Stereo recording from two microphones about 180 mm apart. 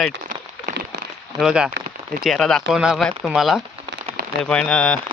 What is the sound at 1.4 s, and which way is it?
Speech, 5° right (ahead or behind).